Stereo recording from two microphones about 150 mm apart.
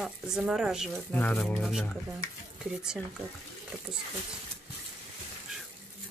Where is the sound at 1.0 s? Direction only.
10° left (ahead or behind).